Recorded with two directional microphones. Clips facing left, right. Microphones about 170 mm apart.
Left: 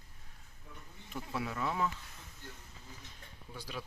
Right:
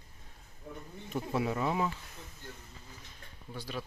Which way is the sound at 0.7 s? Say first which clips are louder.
Right 10 dB; 40° right (ahead or behind).